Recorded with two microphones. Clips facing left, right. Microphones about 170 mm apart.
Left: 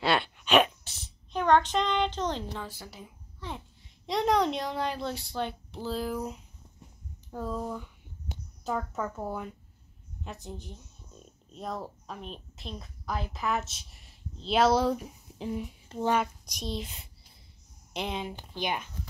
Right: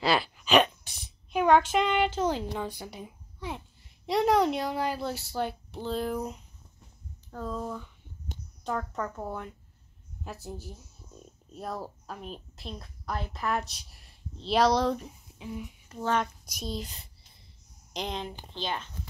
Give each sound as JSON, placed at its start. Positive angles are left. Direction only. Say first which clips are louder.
{"t": 0.0, "sound": "a sound", "louder": "right 1 dB", "side_deg": 0}
{"t": 0.8, "sound": "speech", "louder": "left 1 dB", "side_deg": -15}
{"t": 3.5, "sound": "a woman's voice", "louder": "even", "side_deg": -5}
{"t": 15.3, "sound": "speech", "louder": "left 5 dB", "side_deg": 30}
{"t": 16.4, "sound": "a woman's voice", "louder": "even", "side_deg": 0}